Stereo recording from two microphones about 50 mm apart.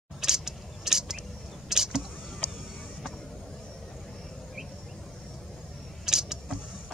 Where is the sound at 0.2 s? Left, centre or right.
Centre.